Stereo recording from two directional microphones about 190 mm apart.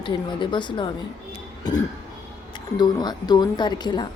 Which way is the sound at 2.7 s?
20° left (ahead or behind).